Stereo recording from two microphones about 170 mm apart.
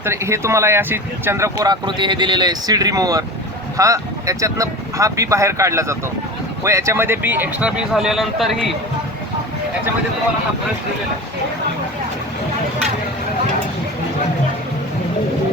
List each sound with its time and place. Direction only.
0.0 s speech: 15° right (ahead or behind)